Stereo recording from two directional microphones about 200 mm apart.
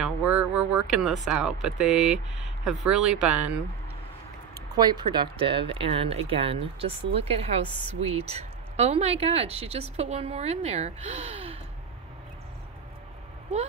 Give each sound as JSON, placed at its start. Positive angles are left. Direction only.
{"t": 0.0, "sound": "speech", "side_deg": -5}
{"t": 4.7, "sound": "speech", "side_deg": -20}